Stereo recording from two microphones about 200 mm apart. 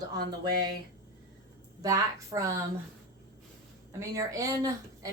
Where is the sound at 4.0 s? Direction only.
15° right (ahead or behind).